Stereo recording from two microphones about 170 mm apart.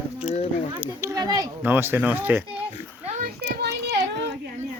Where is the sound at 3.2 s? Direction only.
55° right (ahead or behind); by 4.4 s 80° right.